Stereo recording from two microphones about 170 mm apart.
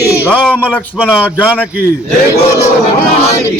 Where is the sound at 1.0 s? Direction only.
10° left (ahead or behind).